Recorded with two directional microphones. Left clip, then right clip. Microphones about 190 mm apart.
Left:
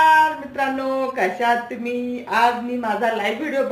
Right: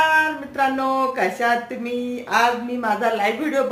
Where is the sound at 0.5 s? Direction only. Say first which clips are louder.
Right 2 dB; 25° right (ahead or behind).